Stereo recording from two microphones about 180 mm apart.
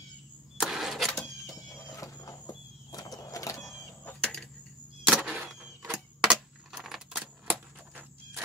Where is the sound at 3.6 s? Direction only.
5° left (ahead or behind).